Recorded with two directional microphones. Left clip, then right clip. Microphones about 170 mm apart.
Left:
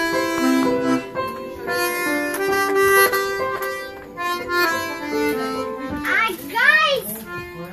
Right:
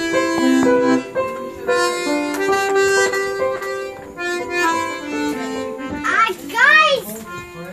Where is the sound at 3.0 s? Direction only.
30° left (ahead or behind).